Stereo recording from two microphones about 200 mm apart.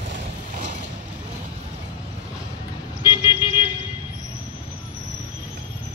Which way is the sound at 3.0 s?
25° left (ahead or behind).